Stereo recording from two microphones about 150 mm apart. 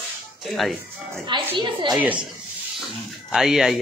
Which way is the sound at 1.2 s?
30° right (ahead or behind).